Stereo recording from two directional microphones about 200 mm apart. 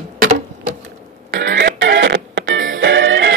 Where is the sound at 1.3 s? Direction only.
65° right (ahead or behind).